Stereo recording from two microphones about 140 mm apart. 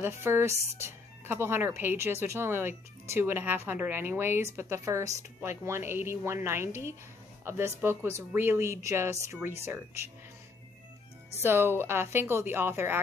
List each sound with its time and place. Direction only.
0.0 s speech: 15° right (ahead or behind)
11.4 s speech: 15° right (ahead or behind)